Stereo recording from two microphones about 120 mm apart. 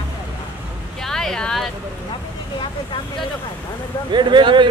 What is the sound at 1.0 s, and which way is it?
Speech, 5° left (ahead or behind).